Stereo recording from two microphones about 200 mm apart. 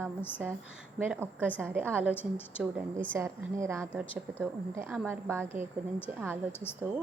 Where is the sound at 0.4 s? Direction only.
5° right (ahead or behind).